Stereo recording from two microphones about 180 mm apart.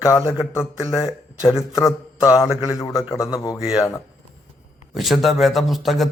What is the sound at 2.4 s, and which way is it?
A man's voice, 15° left (ahead or behind).